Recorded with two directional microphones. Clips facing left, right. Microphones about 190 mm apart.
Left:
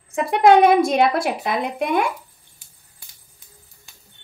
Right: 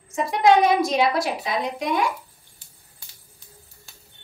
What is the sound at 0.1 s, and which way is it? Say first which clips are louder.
A woman's voice: left 4 dB; 60° left (ahead or behind).